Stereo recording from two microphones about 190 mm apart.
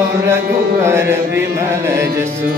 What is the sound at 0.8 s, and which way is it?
Music, 15° right (ahead or behind).